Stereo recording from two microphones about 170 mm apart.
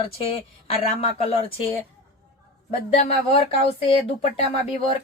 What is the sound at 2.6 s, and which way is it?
Speech, 35° left (ahead or behind).